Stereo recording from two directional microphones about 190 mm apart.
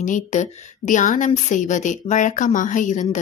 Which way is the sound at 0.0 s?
40° left (ahead or behind).